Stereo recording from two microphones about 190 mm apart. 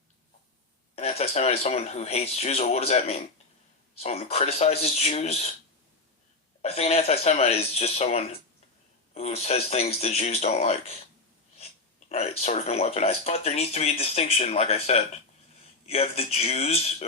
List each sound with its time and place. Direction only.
0.9 s speech: 30° left (ahead or behind)
6.6 s speech: 35° left (ahead or behind)